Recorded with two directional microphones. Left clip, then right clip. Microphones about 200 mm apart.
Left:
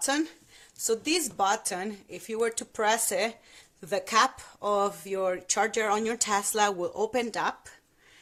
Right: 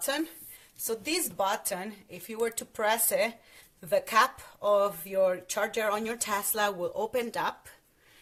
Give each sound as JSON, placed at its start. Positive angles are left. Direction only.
{"t": 0.9, "sound": "speech", "side_deg": 45}